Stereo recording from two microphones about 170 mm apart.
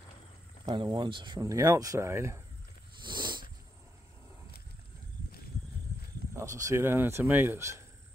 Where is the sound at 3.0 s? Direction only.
25° right (ahead or behind).